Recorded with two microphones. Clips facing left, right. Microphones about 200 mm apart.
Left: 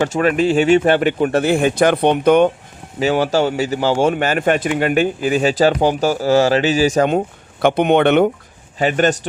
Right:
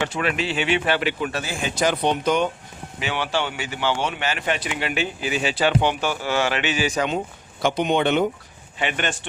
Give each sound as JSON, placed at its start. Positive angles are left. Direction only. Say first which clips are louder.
{"t": 0.0, "sound": "speech", "louder": "left 9 dB", "side_deg": 45}
{"t": 3.0, "sound": "speech", "louder": "left 10 dB", "side_deg": 40}
{"t": 7.6, "sound": "speech", "louder": "left 7 dB", "side_deg": 60}
{"t": 8.8, "sound": "speech", "louder": "left 10 dB", "side_deg": 40}